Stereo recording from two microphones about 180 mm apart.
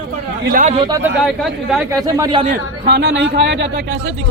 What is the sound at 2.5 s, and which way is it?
Speech, 65° right (ahead or behind).